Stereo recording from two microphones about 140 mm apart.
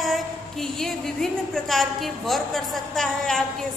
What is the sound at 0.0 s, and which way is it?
A woman's voice, centre (ahead or behind).